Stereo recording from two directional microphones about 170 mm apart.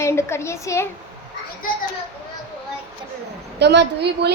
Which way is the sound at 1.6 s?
55° left (ahead or behind).